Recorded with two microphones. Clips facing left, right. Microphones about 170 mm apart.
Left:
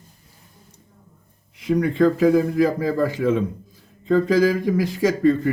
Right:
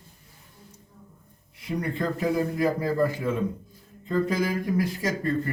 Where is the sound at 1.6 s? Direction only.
90° left.